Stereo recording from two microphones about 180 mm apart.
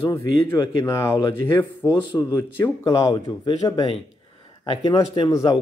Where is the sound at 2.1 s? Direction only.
20° left (ahead or behind).